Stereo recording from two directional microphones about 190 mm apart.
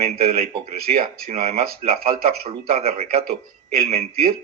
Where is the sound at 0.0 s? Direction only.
30° right (ahead or behind).